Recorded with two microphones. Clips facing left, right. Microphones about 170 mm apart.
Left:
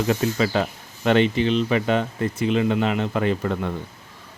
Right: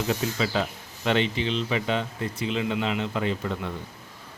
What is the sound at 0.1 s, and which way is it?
Speech, 55° left (ahead or behind).